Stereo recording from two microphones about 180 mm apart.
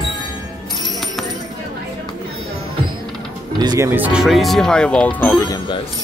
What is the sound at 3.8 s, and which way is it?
Speech, 10° right (ahead or behind).